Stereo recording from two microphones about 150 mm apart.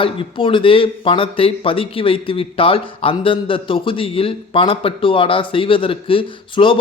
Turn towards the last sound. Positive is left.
turn(degrees=35)  # may be behind; listen again after turning